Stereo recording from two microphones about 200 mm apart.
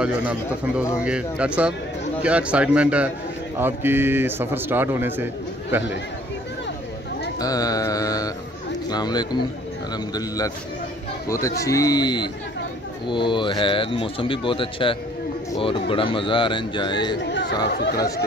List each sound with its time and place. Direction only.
0.7 s a man's voice: 5° right (ahead or behind)
7.3 s mantra: 20° left (ahead or behind)
8.9 s a man's voice: 20° left (ahead or behind)
11.6 s speech: 15° left (ahead or behind)
17.3 s chatter: 60° left (ahead or behind)
17.6 s speech: 55° left (ahead or behind)